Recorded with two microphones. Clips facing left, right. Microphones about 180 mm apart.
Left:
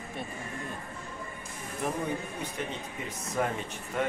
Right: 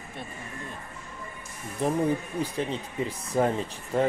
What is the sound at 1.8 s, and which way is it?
Speech, 30° right (ahead or behind).